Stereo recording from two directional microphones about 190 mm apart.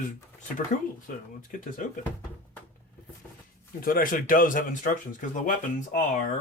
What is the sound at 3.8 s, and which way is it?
Speech, 45° left (ahead or behind).